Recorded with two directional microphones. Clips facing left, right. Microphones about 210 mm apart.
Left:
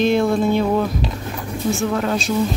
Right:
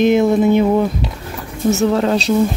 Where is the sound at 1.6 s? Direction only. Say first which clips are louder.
Right 6 dB; 35° right (ahead or behind).